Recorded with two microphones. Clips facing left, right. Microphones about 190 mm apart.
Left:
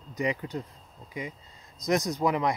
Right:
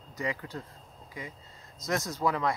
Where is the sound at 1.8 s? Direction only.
15° left (ahead or behind).